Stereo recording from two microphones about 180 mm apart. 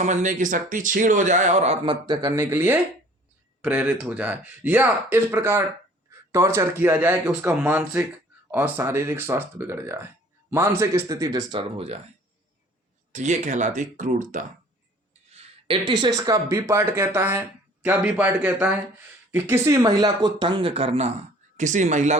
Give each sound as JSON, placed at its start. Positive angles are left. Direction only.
{"t": 0.0, "sound": "speech", "side_deg": -40}
{"t": 13.1, "sound": "speech", "side_deg": -40}